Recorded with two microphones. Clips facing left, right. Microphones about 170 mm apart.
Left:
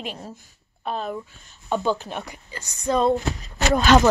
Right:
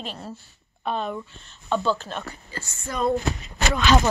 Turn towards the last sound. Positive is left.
turn(degrees=40)  # may be behind; listen again after turning